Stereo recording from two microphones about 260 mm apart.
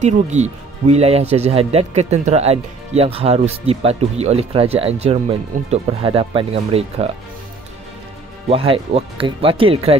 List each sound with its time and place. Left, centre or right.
0.0 s speech: right
8.5 s speech: right